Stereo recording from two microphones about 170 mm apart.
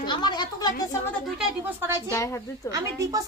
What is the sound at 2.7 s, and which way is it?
Speech, 20° right (ahead or behind).